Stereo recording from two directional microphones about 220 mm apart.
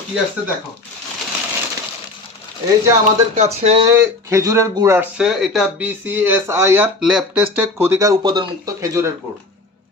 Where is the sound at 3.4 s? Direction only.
30° right (ahead or behind).